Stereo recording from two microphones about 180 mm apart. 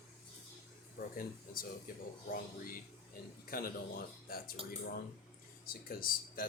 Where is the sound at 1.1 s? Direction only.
50° left (ahead or behind).